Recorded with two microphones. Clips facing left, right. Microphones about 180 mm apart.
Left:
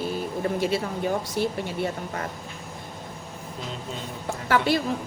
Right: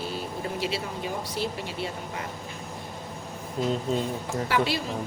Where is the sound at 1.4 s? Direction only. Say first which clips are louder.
Left 4 dB; 55° left (ahead or behind).